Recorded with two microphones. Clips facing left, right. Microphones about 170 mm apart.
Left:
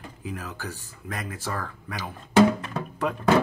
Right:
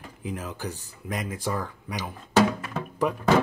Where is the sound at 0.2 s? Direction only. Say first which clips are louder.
Right 2 dB; 20° right (ahead or behind).